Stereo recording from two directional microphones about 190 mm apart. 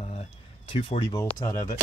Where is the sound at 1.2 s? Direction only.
15° left (ahead or behind).